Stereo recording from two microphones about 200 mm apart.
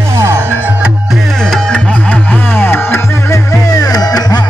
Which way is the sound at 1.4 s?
5° left (ahead or behind).